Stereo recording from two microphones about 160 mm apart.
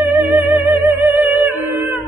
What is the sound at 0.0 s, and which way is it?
Music, 10° right (ahead or behind).